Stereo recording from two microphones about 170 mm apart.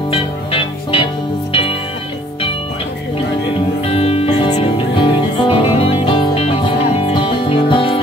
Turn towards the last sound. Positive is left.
turn(degrees=30)  # may be behind; listen again after turning